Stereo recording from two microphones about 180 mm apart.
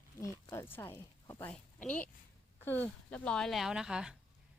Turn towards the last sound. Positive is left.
turn(degrees=-5)  # may be behind; listen again after turning